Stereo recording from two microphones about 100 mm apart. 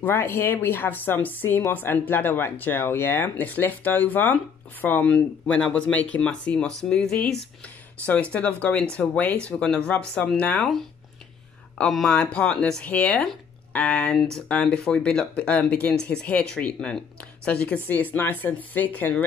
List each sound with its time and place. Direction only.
0.0 s speech: 20° left (ahead or behind)
11.8 s speech: 5° left (ahead or behind)